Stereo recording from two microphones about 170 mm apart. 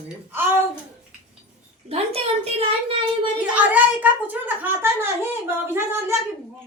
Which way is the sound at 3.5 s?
10° right (ahead or behind).